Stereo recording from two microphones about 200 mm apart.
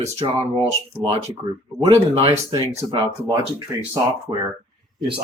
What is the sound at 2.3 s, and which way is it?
Speech, 20° right (ahead or behind).